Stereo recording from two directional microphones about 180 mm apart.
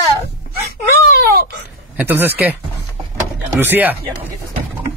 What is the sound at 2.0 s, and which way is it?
Speech, 10° right (ahead or behind).